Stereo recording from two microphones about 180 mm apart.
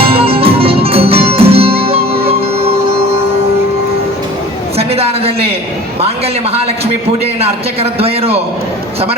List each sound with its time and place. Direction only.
0.0 s music: 30° right (ahead or behind)
4.8 s a sound: 35° right (ahead or behind)
7.4 s a man's voice: 35° right (ahead or behind)